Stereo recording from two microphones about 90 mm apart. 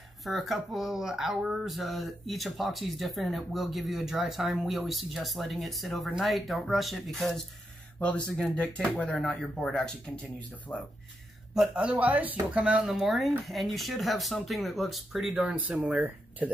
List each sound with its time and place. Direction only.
0.2 s speech: centre (ahead or behind)
8.4 s speech: 15° left (ahead or behind)
10.7 s speech: 25° left (ahead or behind)
11.5 s speech: 10° right (ahead or behind)